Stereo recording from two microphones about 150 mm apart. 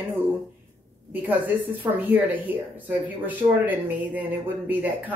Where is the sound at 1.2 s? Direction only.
10° right (ahead or behind).